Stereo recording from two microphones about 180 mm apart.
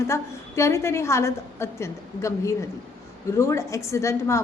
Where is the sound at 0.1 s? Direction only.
15° left (ahead or behind).